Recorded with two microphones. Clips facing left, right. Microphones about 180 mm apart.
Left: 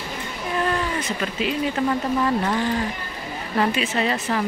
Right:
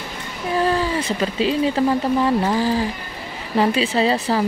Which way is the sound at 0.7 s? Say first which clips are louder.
Right 4 dB; 30° right (ahead or behind).